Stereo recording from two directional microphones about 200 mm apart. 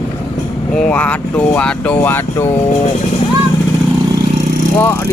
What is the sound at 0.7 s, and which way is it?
Speech, 5° left (ahead or behind).